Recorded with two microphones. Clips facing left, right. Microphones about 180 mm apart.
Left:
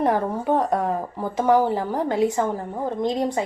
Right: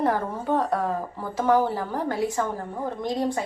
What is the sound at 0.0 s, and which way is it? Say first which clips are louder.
A woman's voice: left 3 dB; 15° left (ahead or behind).